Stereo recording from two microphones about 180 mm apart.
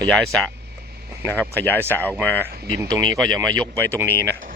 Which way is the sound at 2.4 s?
20° right (ahead or behind).